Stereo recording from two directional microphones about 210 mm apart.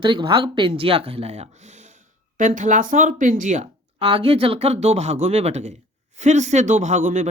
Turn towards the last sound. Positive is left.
turn(degrees=-35)  # may be behind; listen again after turning